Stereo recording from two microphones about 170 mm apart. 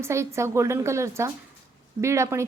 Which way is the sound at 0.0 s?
15° right (ahead or behind).